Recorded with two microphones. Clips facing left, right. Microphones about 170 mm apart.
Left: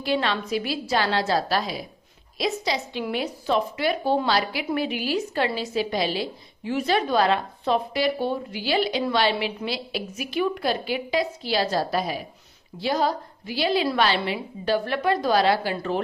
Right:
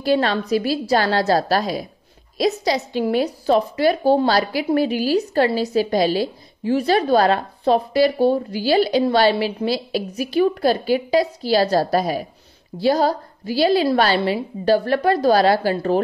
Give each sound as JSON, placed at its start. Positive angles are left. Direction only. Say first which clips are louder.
{"t": 0.0, "sound": "a woman's voice", "louder": "right 6 dB", "side_deg": -40}